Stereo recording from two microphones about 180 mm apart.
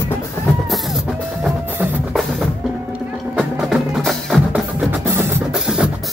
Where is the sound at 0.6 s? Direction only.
Centre (ahead or behind).